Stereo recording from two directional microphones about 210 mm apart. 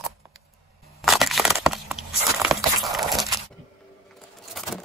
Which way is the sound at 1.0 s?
Centre (ahead or behind).